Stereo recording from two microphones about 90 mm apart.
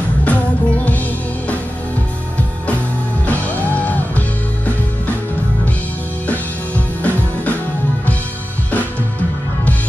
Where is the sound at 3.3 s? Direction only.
15° left (ahead or behind).